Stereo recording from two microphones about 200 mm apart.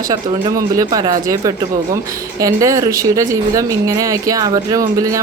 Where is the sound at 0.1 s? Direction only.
20° right (ahead or behind).